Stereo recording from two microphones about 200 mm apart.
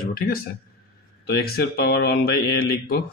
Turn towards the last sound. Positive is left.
turn(degrees=50)  # may be behind; listen again after turning